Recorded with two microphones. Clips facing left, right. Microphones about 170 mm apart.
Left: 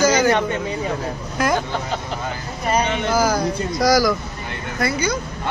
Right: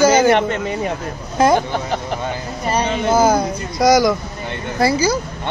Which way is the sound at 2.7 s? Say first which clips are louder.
Right 3 dB; 25° right (ahead or behind).